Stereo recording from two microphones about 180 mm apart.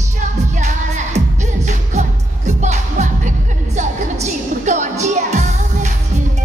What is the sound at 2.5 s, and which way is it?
Music, 40° right (ahead or behind).